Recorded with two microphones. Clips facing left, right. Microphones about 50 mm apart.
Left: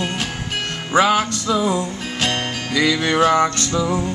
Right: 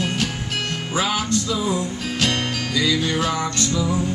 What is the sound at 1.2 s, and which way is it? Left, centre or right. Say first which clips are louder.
Music: left 3 dB; left.